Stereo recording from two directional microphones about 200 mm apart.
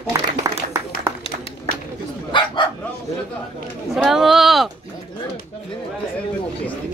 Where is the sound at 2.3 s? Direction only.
25° left (ahead or behind).